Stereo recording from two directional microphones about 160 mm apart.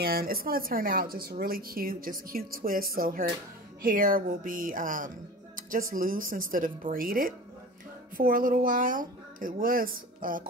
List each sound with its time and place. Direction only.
0.0 s speech: 70° right (ahead or behind)